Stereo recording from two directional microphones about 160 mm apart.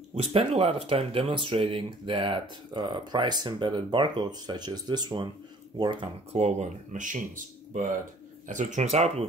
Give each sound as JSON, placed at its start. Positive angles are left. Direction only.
{"t": 0.1, "sound": "speech", "side_deg": -35}
{"t": 6.4, "sound": "speech", "side_deg": -50}